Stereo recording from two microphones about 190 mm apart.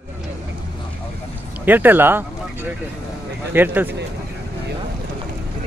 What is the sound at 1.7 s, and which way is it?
Speech, 10° right (ahead or behind).